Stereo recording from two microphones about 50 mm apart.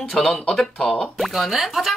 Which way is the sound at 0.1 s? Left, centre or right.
Centre.